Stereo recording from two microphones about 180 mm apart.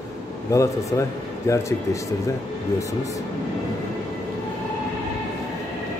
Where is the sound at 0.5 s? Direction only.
20° left (ahead or behind).